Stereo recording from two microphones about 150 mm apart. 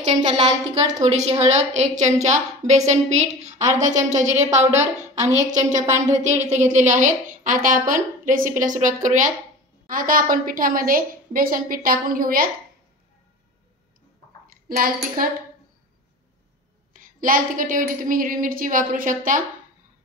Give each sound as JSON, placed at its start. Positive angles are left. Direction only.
{"t": 0.0, "sound": "a woman's voice", "side_deg": -50}
{"t": 0.5, "sound": "a woman's voice", "side_deg": -25}
{"t": 1.0, "sound": "a woman's voice", "side_deg": -45}
{"t": 4.6, "sound": "a woman's voice", "side_deg": -20}
{"t": 5.5, "sound": "a woman's voice", "side_deg": -55}
{"t": 14.5, "sound": "a child's voice", "side_deg": -70}
{"t": 16.9, "sound": "a woman's voice", "side_deg": -65}